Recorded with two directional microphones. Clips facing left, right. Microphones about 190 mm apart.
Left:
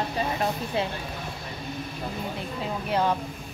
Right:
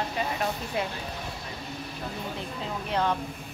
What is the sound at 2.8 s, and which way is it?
Speech, 10° left (ahead or behind).